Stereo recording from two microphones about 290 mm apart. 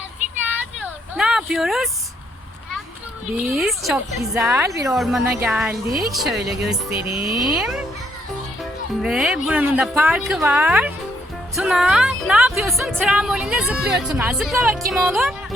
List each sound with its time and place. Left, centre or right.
0.8 s a sound: centre
3.5 s speech: centre
6.9 s music: right
7.5 s speech: centre
9.0 s speech: centre